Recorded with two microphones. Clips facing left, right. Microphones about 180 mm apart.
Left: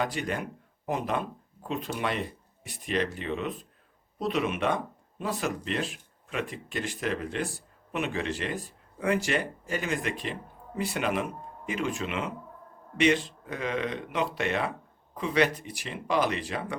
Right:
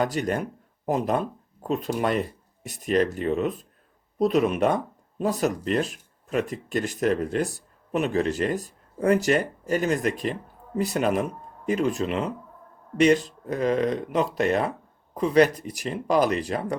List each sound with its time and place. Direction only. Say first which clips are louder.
0.0 s speech: right 5 dB; 40° right (ahead or behind)